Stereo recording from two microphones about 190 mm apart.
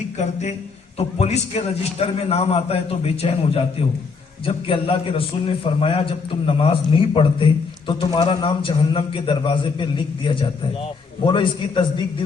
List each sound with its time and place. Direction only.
0.9 s a man's voice: 35° left (ahead or behind)